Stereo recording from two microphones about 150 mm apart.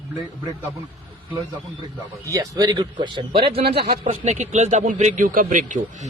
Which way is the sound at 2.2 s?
20° right (ahead or behind).